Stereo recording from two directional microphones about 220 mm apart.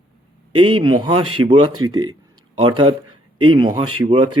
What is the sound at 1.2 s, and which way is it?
Speech, 90° right.